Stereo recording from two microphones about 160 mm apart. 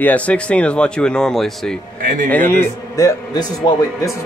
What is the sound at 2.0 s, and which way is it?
Speech, 55° right (ahead or behind).